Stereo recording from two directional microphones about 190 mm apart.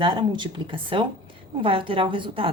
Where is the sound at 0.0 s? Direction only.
25° right (ahead or behind).